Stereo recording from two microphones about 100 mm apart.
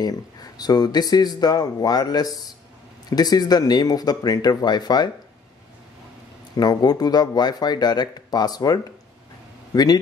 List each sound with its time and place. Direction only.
0.0 s speech: 40° left (ahead or behind)
6.5 s speech: 40° left (ahead or behind)